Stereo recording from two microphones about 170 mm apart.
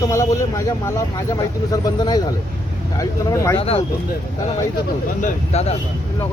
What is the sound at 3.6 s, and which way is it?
Speech, 35° left (ahead or behind).